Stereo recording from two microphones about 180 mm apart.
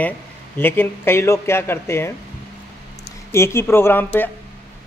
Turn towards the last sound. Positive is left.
turn(degrees=10)  # may be behind; listen again after turning